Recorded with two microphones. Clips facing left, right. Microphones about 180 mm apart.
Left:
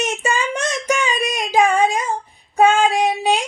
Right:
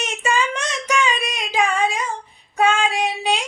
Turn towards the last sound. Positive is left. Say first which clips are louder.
# left 4 dB
turn(degrees=45)  # may be behind; listen again after turning